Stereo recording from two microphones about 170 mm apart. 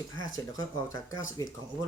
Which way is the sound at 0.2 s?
20° left (ahead or behind).